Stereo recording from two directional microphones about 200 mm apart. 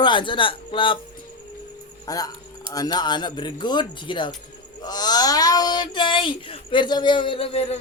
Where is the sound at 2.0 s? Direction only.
20° left (ahead or behind).